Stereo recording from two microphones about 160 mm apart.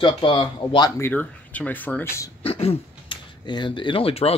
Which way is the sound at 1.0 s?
10° left (ahead or behind).